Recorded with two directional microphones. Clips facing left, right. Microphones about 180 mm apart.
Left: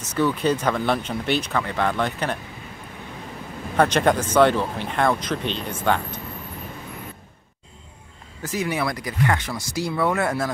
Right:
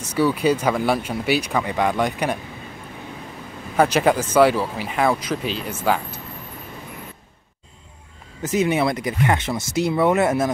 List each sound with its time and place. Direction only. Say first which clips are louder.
0.0 s speech: right 2 dB; 10° right (ahead or behind)
3.7 s speech: right 1 dB; 5° right (ahead or behind)
8.4 s speech: right 6 dB; 20° right (ahead or behind)